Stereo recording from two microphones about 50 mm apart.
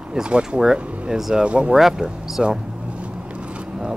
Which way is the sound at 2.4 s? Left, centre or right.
Centre.